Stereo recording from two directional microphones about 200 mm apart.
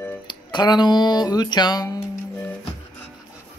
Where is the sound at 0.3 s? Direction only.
20° left (ahead or behind).